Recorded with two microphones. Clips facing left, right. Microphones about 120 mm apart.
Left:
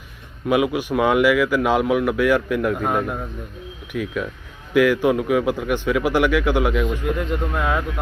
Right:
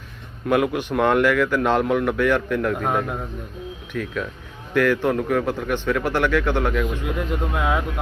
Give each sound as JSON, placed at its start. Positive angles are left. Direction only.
{"t": 0.4, "sound": "speech", "side_deg": 5}